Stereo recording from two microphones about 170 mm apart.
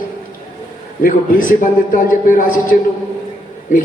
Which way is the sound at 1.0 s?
50° left (ahead or behind).